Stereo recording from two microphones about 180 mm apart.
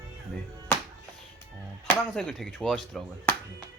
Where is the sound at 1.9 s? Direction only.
5° left (ahead or behind).